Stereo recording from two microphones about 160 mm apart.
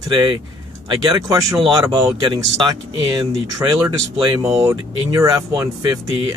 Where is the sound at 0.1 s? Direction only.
25° right (ahead or behind).